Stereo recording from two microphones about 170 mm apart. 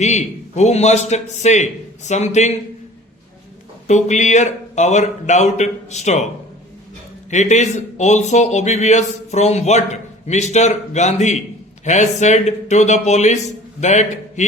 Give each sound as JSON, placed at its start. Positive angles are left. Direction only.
{"t": 0.0, "sound": "a man's voice", "side_deg": 40}
{"t": 3.8, "sound": "speech", "side_deg": 45}
{"t": 7.3, "sound": "a man's voice", "side_deg": 45}